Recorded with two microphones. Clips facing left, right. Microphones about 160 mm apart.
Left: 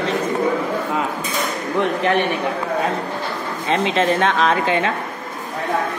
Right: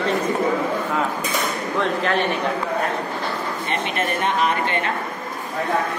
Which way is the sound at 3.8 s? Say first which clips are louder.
Left 6 dB; 90° left.